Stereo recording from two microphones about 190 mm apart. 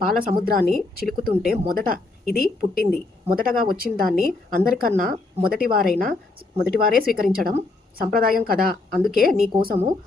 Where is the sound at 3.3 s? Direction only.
50° right (ahead or behind).